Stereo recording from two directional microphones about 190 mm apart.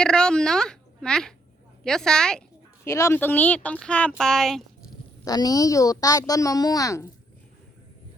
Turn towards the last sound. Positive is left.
turn(degrees=15)  # may be behind; listen again after turning